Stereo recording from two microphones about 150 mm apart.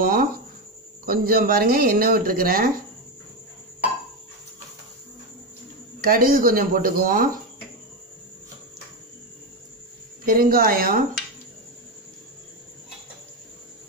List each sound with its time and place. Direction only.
0.0 s a sound: 70° right (ahead or behind)
1.0 s speech: 75° right (ahead or behind)
5.9 s speech: 70° right (ahead or behind)
10.2 s speech: 70° right (ahead or behind)